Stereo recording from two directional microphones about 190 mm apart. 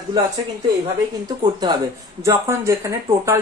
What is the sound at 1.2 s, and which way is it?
Speech, 20° right (ahead or behind).